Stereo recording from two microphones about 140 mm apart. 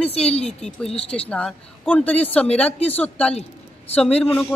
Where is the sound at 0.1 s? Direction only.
45° left (ahead or behind).